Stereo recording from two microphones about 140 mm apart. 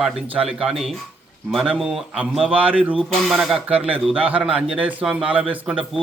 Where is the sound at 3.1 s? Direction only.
Centre (ahead or behind).